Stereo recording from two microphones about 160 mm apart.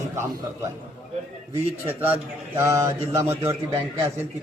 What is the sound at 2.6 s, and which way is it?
Speech, 20° right (ahead or behind).